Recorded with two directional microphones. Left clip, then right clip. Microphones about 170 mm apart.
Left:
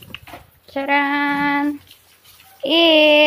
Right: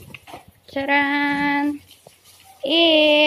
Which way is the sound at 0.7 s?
5° left (ahead or behind).